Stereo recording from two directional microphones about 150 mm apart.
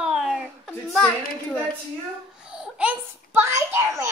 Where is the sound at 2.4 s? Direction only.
5° right (ahead or behind).